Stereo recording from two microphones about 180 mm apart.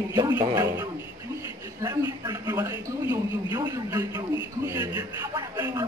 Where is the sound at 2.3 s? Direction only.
15° right (ahead or behind).